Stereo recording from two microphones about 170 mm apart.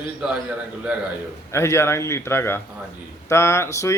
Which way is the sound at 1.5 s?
15° left (ahead or behind).